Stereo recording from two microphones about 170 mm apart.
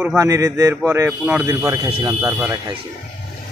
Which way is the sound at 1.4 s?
20° right (ahead or behind).